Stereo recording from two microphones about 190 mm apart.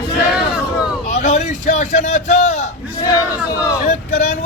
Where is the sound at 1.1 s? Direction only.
40° left (ahead or behind).